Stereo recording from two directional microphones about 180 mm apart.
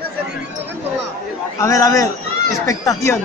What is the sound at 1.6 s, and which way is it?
A man's voice, 20° left (ahead or behind).